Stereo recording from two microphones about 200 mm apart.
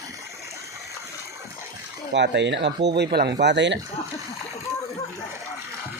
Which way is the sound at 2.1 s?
60° right (ahead or behind).